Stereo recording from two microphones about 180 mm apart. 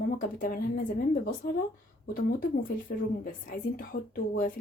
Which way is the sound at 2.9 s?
50° left (ahead or behind).